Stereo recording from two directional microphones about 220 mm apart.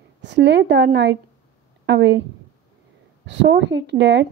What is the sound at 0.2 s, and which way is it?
Speech, 50° right (ahead or behind).